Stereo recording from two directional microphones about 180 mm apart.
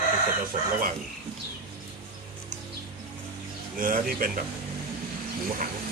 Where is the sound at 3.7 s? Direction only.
50° right (ahead or behind).